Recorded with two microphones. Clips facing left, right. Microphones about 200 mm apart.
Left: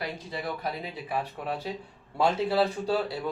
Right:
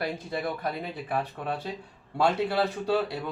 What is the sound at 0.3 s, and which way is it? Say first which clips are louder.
Speech: right 2 dB; 55° right (ahead or behind).